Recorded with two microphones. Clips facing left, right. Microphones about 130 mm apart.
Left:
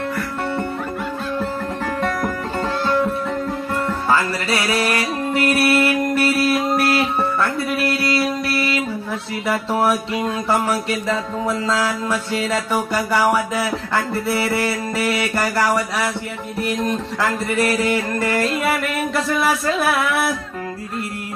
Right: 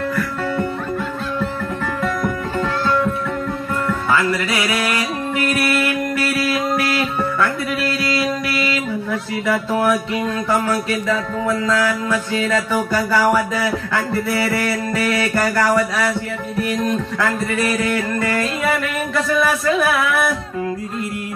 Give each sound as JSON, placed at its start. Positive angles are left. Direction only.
{"t": 2.0, "sound": "music", "side_deg": 30}
{"t": 6.8, "sound": "music", "side_deg": 30}
{"t": 8.2, "sound": "a sound", "side_deg": 30}
{"t": 10.5, "sound": "a man's voice", "side_deg": 30}
{"t": 12.5, "sound": "a man's voice", "side_deg": 20}
{"t": 18.4, "sound": "a sound", "side_deg": 30}